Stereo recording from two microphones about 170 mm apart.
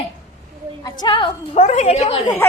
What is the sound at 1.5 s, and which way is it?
Speech, 40° left (ahead or behind).